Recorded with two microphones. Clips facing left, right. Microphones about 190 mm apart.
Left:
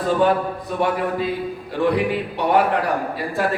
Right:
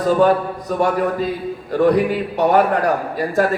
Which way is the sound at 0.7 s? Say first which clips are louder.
Right 4 dB; 45° right (ahead or behind).